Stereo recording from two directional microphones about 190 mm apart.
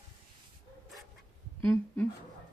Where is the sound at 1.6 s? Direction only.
10° left (ahead or behind).